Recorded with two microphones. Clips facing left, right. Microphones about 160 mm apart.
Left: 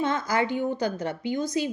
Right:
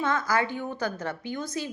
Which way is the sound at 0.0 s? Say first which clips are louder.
Left 1 dB; 20° left (ahead or behind).